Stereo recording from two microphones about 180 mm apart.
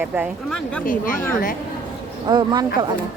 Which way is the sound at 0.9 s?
50° left (ahead or behind).